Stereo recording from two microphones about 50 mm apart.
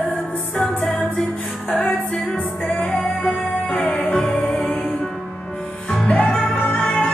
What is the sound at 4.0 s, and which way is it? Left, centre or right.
Music, centre.